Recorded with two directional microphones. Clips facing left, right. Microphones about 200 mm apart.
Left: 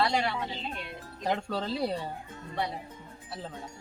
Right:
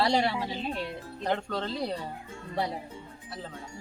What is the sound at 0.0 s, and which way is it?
Speech, 35° right (ahead or behind).